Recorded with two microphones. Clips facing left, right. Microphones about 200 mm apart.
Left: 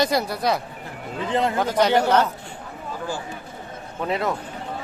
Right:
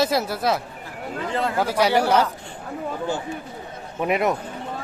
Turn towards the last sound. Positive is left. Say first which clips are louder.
# right 3 dB
turn(degrees=-15)  # may be behind; listen again after turning